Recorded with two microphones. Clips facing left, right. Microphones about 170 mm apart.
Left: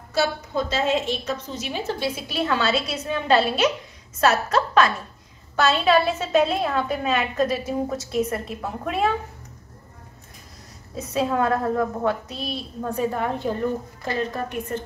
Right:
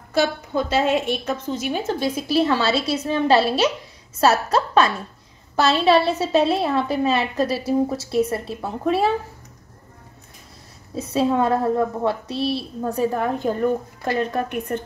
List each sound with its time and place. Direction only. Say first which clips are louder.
0.1 s a woman's voice: right 3 dB; 55° right (ahead or behind); by 9.1 s 30° right (ahead or behind)
11.0 s a woman's voice: right 3 dB; 30° right (ahead or behind)
14.3 s a woman's voice: right 4 dB; 60° right (ahead or behind)